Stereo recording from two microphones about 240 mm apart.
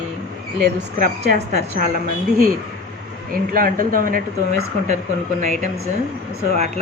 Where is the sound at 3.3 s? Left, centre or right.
Right.